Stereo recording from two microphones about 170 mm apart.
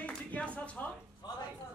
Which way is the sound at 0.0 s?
10° left (ahead or behind).